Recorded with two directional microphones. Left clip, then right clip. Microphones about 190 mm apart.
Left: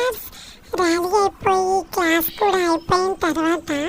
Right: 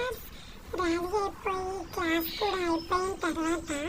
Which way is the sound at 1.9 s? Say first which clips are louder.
Left 11 dB; 50° left (ahead or behind).